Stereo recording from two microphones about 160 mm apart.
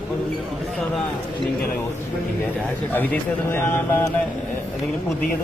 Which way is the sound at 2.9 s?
10° left (ahead or behind).